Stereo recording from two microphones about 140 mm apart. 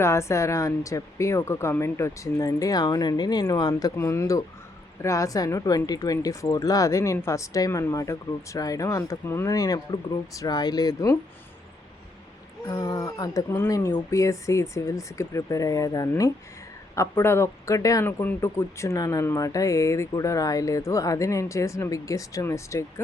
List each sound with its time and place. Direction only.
0.0 s speech: 20° left (ahead or behind)
12.6 s speech: 25° left (ahead or behind)